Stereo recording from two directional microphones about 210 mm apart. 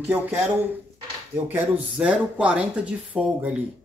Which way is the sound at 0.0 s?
10° right (ahead or behind).